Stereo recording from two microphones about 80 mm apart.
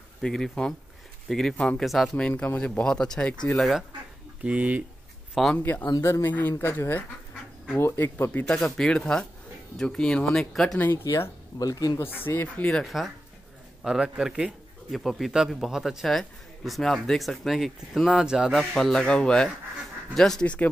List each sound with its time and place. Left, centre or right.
0.2 s speech: centre
3.5 s speech: centre
4.4 s speech: centre
5.6 s speech: left
5.9 s speech: left
6.2 s speech: left
8.5 s speech: centre
11.1 s speech: left
12.0 s speech: left
12.8 s speech: centre
18.6 s speech: centre